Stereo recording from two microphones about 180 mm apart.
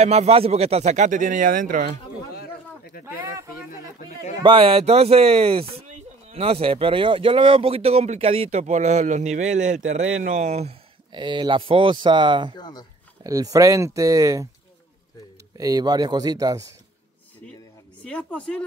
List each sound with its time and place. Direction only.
0.0 s speech: 35° right (ahead or behind)
2.3 s a sound: 60° left (ahead or behind)
4.4 s speech: 30° right (ahead or behind)
12.5 s speech: 25° left (ahead or behind)
13.2 s speech: 20° right (ahead or behind)
15.5 s speech: 20° right (ahead or behind)
18.0 s speech: 5° left (ahead or behind)